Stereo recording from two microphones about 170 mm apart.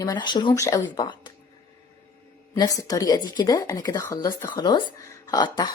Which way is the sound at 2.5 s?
20° left (ahead or behind).